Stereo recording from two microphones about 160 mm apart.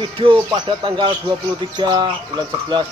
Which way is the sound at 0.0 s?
30° right (ahead or behind).